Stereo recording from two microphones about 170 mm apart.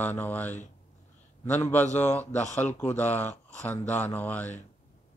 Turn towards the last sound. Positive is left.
turn(degrees=10)  # may be behind; listen again after turning